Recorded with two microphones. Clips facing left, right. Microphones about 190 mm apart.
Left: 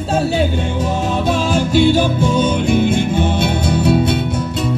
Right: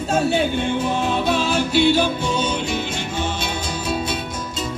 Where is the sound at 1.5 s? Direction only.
45° left (ahead or behind); by 4.0 s 60° left (ahead or behind).